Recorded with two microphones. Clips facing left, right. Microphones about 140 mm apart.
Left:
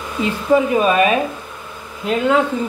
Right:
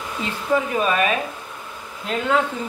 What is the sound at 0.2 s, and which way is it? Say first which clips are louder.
Speech: left 7 dB; 15° left (ahead or behind).